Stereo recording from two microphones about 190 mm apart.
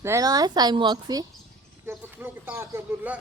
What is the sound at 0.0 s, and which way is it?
A woman's voice, 15° right (ahead or behind).